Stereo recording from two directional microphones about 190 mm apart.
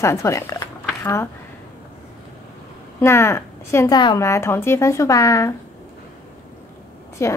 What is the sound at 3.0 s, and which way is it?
Speech, 15° left (ahead or behind).